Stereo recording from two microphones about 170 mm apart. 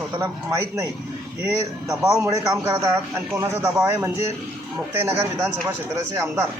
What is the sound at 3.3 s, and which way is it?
Speech, 15° right (ahead or behind).